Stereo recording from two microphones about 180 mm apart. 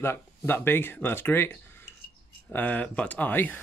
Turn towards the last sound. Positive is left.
turn(degrees=10)  # may be behind; listen again after turning